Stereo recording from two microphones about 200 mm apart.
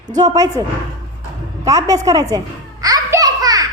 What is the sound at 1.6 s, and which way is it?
Speech, 15° right (ahead or behind).